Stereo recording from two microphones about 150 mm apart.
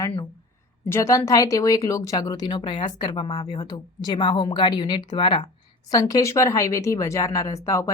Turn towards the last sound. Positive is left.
turn(degrees=20)  # may be behind; listen again after turning